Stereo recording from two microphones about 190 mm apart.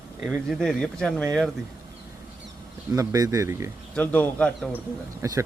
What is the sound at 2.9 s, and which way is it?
Speech, 15° right (ahead or behind).